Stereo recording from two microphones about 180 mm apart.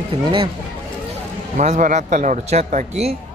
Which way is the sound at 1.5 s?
45° right (ahead or behind).